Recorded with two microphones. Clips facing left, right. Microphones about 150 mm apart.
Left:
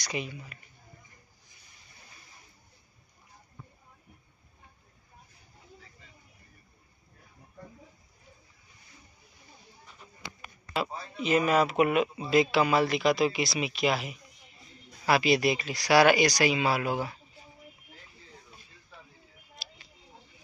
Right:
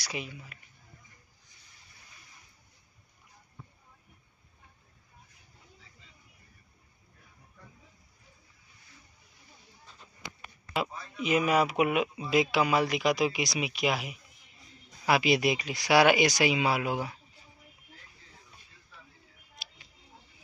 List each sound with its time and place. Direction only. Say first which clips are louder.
0.0 s speech: left 3 dB; 5° right (ahead or behind)
10.9 s a sound: left 1 dB; 30° left (ahead or behind)
11.2 s speech: left 1 dB; 10° right (ahead or behind)